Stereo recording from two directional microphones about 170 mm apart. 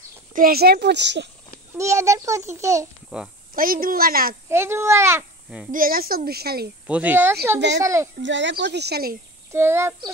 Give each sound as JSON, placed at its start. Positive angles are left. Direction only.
{"t": 0.3, "sound": "speech", "side_deg": -60}
{"t": 1.8, "sound": "a child's voice", "side_deg": -15}
{"t": 3.5, "sound": "a woman's voice", "side_deg": -55}
{"t": 4.5, "sound": "a child's voice", "side_deg": -15}
{"t": 5.7, "sound": "a woman's voice", "side_deg": -55}
{"t": 6.9, "sound": "a child's voice", "side_deg": -10}
{"t": 8.2, "sound": "speech", "side_deg": -90}
{"t": 9.5, "sound": "a child's voice", "side_deg": -15}